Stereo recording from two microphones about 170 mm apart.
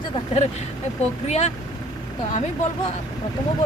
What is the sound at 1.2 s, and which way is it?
Speech, 45° left (ahead or behind).